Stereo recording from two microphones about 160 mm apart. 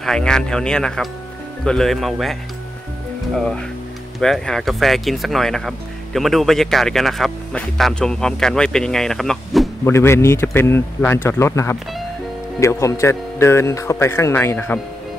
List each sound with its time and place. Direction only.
0.0 s speech: 5° left (ahead or behind)
3.3 s speech: 5° left (ahead or behind)
9.8 s speech: 15° left (ahead or behind)